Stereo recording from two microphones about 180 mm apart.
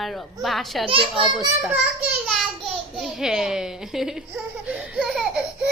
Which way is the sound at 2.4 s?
Centre (ahead or behind).